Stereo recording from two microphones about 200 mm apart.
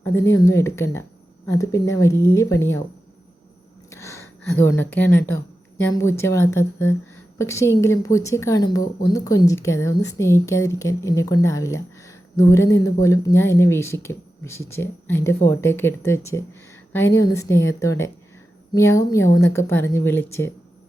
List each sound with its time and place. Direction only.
0.0 s speech: 15° left (ahead or behind)
3.8 s a sound: 15° left (ahead or behind)
5.8 s speech: 15° left (ahead or behind)